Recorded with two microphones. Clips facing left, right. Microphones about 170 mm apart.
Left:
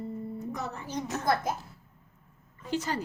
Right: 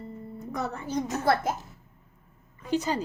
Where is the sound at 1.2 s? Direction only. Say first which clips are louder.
Right 2 dB; 25° right (ahead or behind).